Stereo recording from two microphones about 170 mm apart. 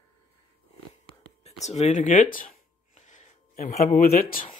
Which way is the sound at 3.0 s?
45° left (ahead or behind).